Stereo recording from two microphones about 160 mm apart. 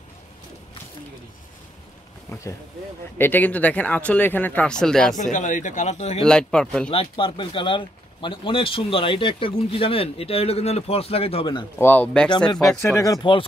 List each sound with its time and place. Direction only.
3.2 s speech: 10° left (ahead or behind)
5.1 s a man's voice: 50° left (ahead or behind)
6.2 s speech: 5° left (ahead or behind)
6.9 s speech: 35° left (ahead or behind)
11.8 s speech: 10° left (ahead or behind)
12.6 s speech: 20° left (ahead or behind)